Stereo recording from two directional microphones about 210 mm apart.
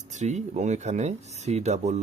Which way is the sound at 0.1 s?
35° right (ahead or behind).